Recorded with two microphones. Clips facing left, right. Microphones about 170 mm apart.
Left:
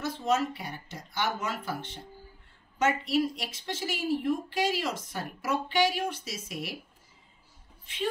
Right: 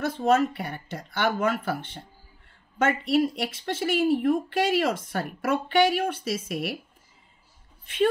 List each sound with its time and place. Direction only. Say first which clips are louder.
0.0 s speech: right 6 dB; 55° right (ahead or behind)
7.8 s speech: right 9 dB; 55° right (ahead or behind)